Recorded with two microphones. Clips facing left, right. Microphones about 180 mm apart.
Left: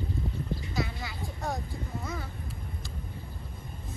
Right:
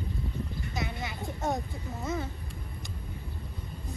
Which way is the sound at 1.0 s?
20° right (ahead or behind).